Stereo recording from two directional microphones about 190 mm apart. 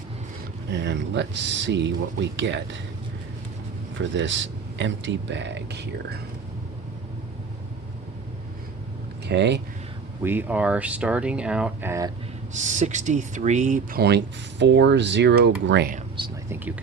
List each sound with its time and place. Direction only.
0.9 s speech: 65° right (ahead or behind)
3.9 s speech: 75° right (ahead or behind)
9.2 s speech: 65° right (ahead or behind)
10.2 s speech: 10° right (ahead or behind)
12.5 s speech: 40° right (ahead or behind)
14.0 s speech: 65° right (ahead or behind)
16.2 s whispering: 25° right (ahead or behind)